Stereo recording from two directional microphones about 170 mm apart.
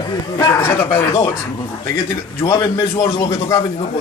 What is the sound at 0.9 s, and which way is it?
Speech, 25° left (ahead or behind).